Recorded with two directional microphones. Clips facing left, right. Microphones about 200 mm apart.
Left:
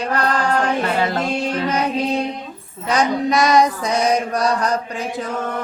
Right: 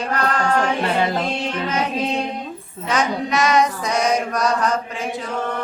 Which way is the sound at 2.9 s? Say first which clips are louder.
Left 3 dB; 35° left (ahead or behind).